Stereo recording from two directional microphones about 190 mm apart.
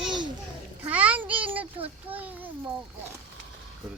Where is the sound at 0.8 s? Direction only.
5° right (ahead or behind).